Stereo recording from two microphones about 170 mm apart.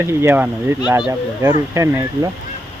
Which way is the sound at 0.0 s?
15° right (ahead or behind).